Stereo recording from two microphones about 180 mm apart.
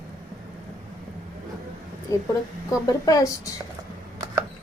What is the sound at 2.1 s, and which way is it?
A woman's voice, 20° left (ahead or behind).